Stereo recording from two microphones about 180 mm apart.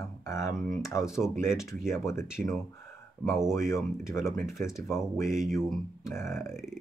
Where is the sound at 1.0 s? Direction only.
5° right (ahead or behind).